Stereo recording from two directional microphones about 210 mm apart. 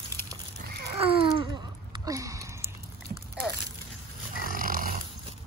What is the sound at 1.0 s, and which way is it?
Babbling, 25° right (ahead or behind).